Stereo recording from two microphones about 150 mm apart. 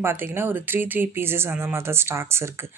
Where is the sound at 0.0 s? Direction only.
15° right (ahead or behind).